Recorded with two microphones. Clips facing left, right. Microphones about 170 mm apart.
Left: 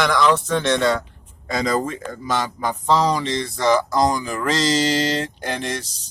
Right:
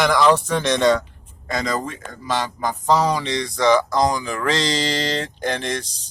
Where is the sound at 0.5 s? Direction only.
15° right (ahead or behind).